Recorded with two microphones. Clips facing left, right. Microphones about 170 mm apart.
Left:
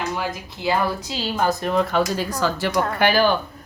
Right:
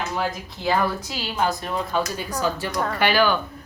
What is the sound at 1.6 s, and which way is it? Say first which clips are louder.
Speech: left 5 dB; 70° left (ahead or behind).